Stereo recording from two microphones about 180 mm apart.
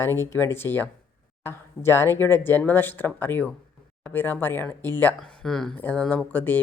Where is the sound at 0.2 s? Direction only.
15° left (ahead or behind).